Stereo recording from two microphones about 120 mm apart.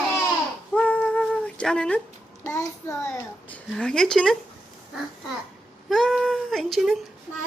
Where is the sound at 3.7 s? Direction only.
5° left (ahead or behind).